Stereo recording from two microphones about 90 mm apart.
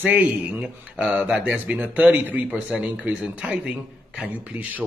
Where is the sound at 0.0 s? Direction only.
20° right (ahead or behind).